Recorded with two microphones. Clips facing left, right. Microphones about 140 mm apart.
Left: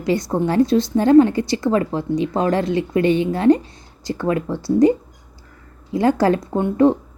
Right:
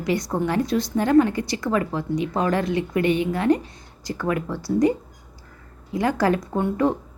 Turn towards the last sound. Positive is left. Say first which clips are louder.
# left 6 dB
turn(degrees=25)  # may be behind; listen again after turning